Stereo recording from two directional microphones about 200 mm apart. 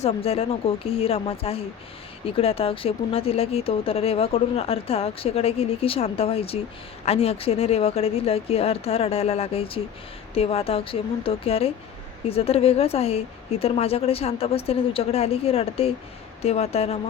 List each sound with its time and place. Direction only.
0.0 s a woman's voice: 30° left (ahead or behind)